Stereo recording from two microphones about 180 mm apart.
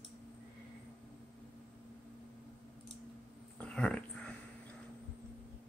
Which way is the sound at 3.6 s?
5° left (ahead or behind).